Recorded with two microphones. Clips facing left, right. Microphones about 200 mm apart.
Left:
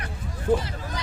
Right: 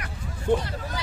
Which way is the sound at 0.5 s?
Centre (ahead or behind).